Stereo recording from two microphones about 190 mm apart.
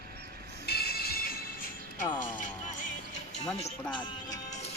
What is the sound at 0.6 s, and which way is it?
Music, 55° left (ahead or behind).